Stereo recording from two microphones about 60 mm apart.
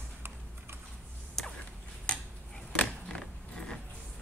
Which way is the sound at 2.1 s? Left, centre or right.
Centre.